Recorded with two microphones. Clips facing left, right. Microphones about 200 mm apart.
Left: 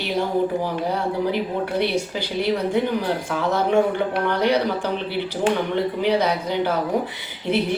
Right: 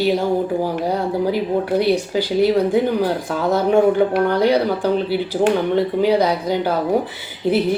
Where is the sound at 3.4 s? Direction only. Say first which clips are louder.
Right 4 dB; 35° right (ahead or behind).